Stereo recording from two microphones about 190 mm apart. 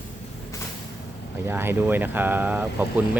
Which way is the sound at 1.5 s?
10° right (ahead or behind).